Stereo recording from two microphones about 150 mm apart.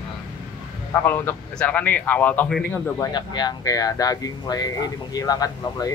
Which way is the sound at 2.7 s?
20° left (ahead or behind).